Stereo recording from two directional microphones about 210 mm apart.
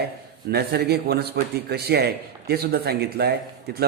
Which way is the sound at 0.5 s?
50° right (ahead or behind).